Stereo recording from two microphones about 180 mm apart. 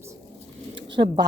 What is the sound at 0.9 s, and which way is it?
Speech, 25° right (ahead or behind).